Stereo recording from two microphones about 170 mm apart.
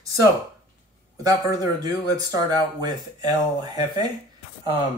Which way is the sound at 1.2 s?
20° right (ahead or behind).